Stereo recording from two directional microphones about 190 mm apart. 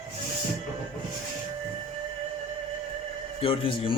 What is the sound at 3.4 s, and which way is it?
Speech, 30° left (ahead or behind).